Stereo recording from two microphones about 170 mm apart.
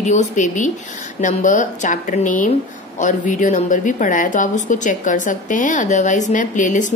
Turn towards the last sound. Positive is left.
turn(degrees=50)  # may be behind; listen again after turning